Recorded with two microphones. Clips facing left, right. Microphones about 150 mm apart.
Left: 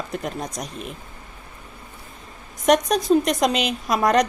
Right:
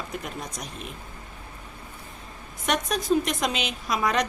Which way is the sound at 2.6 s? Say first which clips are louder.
Left 8 dB; 40° left (ahead or behind).